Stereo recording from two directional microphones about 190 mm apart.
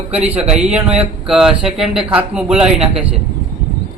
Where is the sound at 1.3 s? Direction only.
5° right (ahead or behind).